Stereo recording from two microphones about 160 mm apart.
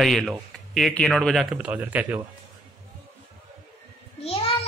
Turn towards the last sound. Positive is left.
turn(degrees=35)  # may be behind; listen again after turning